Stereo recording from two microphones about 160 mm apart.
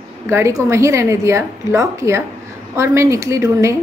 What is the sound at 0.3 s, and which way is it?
A woman's voice, 20° right (ahead or behind).